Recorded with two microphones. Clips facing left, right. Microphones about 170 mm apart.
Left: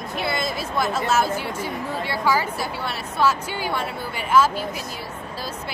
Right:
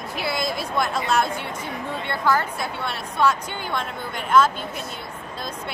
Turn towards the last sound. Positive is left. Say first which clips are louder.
# even
turn(degrees=5)  # may be behind; listen again after turning